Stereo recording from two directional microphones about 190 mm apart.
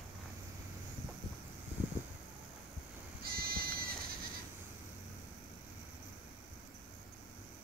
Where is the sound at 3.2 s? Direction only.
50° right (ahead or behind).